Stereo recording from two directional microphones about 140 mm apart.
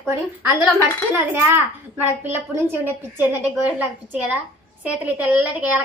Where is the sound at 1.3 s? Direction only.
15° right (ahead or behind).